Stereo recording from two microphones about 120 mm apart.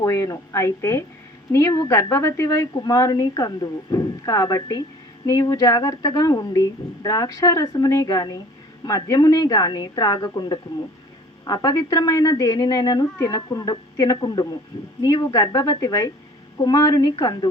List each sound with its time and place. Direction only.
0.0 s a woman's voice: 25° left (ahead or behind)